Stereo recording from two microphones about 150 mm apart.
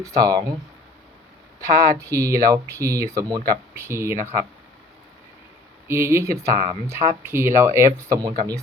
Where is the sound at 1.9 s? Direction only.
20° right (ahead or behind).